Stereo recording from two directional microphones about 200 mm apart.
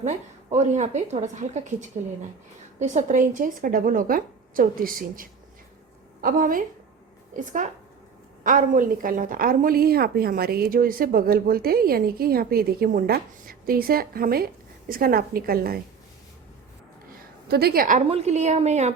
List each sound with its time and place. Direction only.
0.0 s a woman's voice: 35° right (ahead or behind)
2.7 s a woman's voice: 35° right (ahead or behind)
17.5 s a woman's voice: 50° right (ahead or behind); by 18.9 s 35° right (ahead or behind)